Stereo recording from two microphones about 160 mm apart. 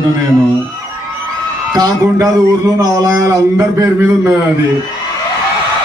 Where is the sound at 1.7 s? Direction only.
20° right (ahead or behind).